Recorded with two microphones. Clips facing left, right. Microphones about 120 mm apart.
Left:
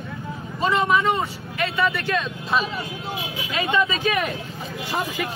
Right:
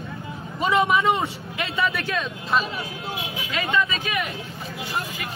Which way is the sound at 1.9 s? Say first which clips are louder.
Left 2 dB; centre (ahead or behind).